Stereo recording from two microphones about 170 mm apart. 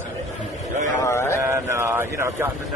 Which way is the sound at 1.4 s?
15° right (ahead or behind).